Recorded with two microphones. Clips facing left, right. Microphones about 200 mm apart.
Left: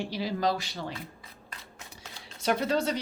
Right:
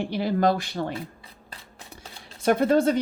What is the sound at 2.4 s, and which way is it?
Speech, 50° right (ahead or behind).